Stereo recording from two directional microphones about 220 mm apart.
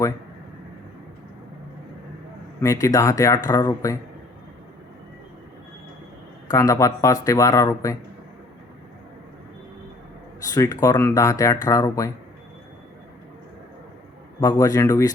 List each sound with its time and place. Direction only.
2.6 s speech: 15° left (ahead or behind)
6.5 s speech: 15° left (ahead or behind)
10.5 s speech: 15° left (ahead or behind)
14.4 s speech: 15° left (ahead or behind)